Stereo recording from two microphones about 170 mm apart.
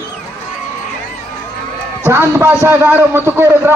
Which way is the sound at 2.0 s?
15° right (ahead or behind).